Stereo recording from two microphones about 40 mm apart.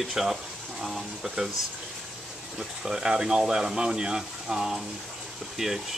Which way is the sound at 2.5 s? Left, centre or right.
Centre.